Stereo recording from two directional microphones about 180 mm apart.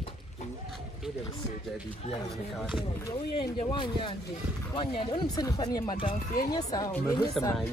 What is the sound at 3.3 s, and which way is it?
Speech, 25° left (ahead or behind).